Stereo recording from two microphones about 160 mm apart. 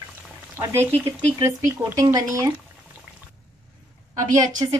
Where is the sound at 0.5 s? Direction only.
15° right (ahead or behind).